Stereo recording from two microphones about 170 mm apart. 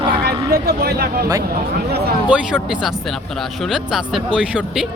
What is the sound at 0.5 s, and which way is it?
Speech, 70° right (ahead or behind).